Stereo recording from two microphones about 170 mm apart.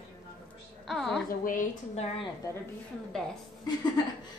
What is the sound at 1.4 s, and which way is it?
Speech, 50° left (ahead or behind).